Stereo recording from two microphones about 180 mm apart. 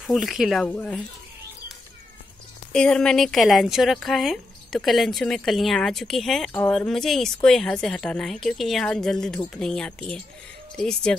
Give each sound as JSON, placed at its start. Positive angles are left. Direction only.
{"t": 0.0, "sound": "speech", "side_deg": 0}
{"t": 2.7, "sound": "speech", "side_deg": 5}